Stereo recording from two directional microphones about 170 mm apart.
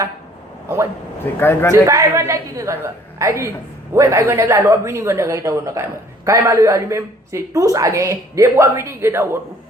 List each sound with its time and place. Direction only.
1.2 s a man's voice: 15° left (ahead or behind)
1.7 s speech: 20° right (ahead or behind)